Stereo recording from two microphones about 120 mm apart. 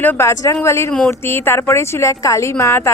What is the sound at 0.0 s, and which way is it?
Speech, 20° left (ahead or behind).